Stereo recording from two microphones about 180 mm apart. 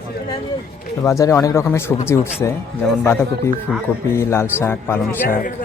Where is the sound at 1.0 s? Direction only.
15° left (ahead or behind).